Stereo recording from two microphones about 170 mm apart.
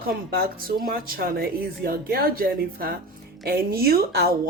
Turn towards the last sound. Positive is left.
turn(degrees=-65)  # may be behind; listen again after turning